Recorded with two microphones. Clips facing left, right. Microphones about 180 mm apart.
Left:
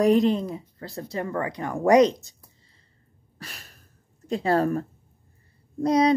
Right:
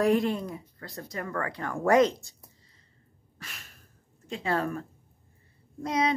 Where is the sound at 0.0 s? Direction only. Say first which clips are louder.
Left 5 dB; 20° left (ahead or behind).